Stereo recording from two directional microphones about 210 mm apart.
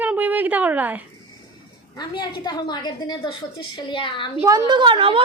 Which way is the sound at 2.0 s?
20° left (ahead or behind).